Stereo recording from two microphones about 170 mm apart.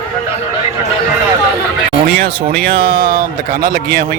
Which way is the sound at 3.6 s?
60° right (ahead or behind).